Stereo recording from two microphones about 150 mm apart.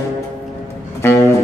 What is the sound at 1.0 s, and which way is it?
Music, 15° left (ahead or behind).